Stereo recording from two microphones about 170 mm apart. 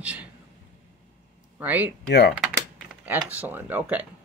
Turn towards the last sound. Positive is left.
turn(degrees=-10)  # may be behind; listen again after turning